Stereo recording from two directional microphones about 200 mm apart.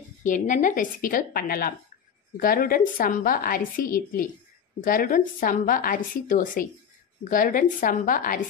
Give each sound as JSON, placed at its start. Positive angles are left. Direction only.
{"t": 0.2, "sound": "a woman's voice", "side_deg": 40}